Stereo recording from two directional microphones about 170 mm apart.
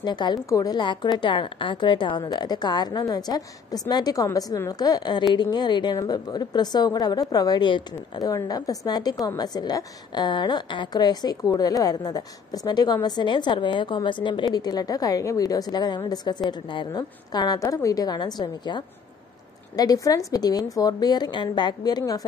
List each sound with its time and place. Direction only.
0.0 s a woman's voice: 25° left (ahead or behind)